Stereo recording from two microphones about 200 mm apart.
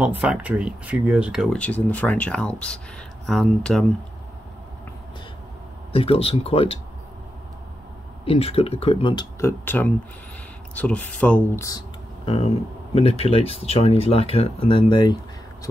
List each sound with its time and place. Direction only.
0.0 s speech: 5° right (ahead or behind)
5.9 s speech: 30° left (ahead or behind)
8.3 s speech: 30° left (ahead or behind)
9.4 s speech: 10° left (ahead or behind)
12.3 s speech: 30° left (ahead or behind)